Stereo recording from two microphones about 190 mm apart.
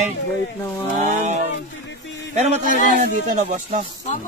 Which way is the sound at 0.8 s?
40° right (ahead or behind).